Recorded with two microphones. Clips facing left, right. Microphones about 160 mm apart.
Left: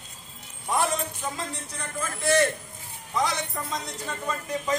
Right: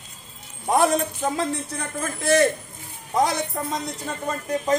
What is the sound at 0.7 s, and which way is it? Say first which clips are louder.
A man's voice: right 7 dB; 55° right (ahead or behind).